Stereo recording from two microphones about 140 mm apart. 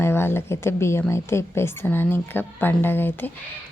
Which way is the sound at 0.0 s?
15° left (ahead or behind).